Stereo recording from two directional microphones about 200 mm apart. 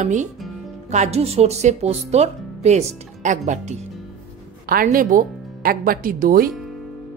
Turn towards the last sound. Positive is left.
turn(degrees=-45)  # may be behind; listen again after turning